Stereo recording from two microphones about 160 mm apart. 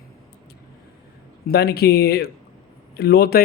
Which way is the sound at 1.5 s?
80° left.